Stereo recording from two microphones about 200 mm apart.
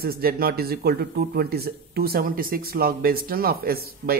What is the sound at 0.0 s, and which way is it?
Speech, 50° right (ahead or behind).